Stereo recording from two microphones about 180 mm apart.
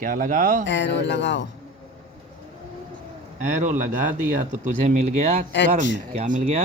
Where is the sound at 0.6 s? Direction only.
75° left (ahead or behind).